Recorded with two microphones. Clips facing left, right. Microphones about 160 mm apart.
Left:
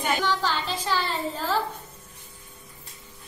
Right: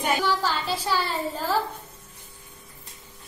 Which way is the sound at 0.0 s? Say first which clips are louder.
Right 1 dB; 10° right (ahead or behind).